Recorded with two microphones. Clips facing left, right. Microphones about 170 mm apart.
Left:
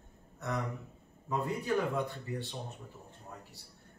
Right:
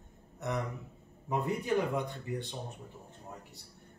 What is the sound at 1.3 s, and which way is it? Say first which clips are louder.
Speech: right 1 dB; 20° right (ahead or behind).